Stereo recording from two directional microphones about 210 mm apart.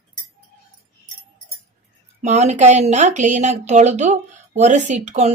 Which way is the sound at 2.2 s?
35° right (ahead or behind).